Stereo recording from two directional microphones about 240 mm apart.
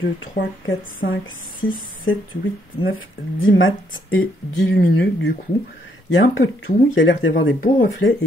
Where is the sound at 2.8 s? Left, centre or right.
Left.